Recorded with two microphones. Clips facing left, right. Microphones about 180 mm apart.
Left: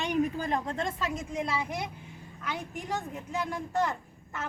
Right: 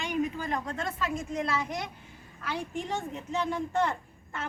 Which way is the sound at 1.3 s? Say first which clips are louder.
Right 1 dB; 10° left (ahead or behind).